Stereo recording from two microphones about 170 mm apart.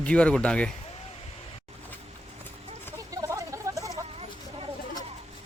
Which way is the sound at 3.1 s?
20° right (ahead or behind).